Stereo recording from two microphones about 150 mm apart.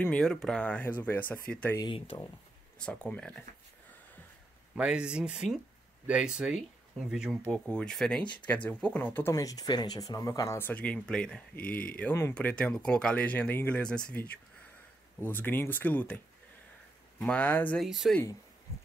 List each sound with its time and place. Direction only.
0.0 s speech: 5° left (ahead or behind)
1.8 s speech: 30° left (ahead or behind)
2.8 s speech: 10° left (ahead or behind)
4.7 s speech: 5° right (ahead or behind); by 9.3 s 10° left (ahead or behind)
9.3 s speech: 25° left (ahead or behind); by 14.0 s 5° left (ahead or behind)
15.1 s speech: 15° left (ahead or behind)
17.2 s speech: 10° left (ahead or behind)
17.8 s speech: centre (ahead or behind)